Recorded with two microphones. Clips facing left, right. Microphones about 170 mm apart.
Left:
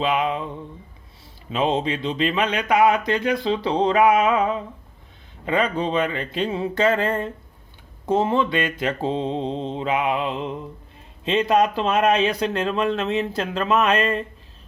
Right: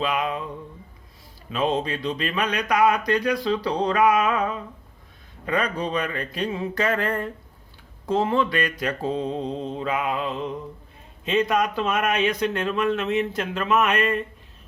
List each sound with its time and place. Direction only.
0.0 s speech: 25° left (ahead or behind)
1.5 s speech: 25° left (ahead or behind)